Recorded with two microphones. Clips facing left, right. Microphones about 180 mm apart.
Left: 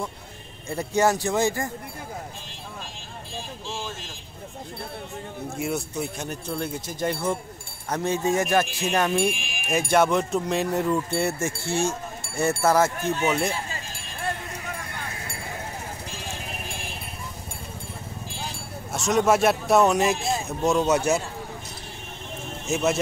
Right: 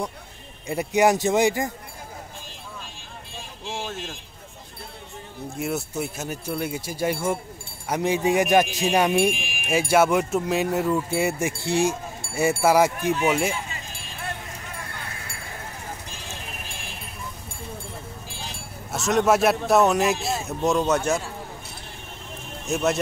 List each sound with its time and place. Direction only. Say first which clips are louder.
0.7 s speech: right 2 dB; 15° right (ahead or behind)
3.7 s vehicle: right 4 dB; 60° right (ahead or behind)
5.6 s speech: right 1 dB; centre (ahead or behind)
18.9 s speech: right 1 dB; centre (ahead or behind)
22.7 s speech: even; centre (ahead or behind)